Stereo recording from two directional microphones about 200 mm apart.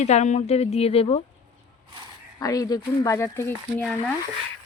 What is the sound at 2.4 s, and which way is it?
Speech, 15° left (ahead or behind).